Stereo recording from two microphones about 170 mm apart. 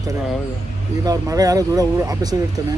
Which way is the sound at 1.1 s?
20° right (ahead or behind).